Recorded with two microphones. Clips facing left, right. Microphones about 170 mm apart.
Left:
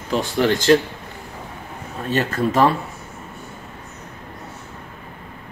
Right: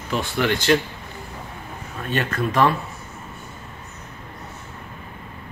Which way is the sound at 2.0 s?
30° left (ahead or behind).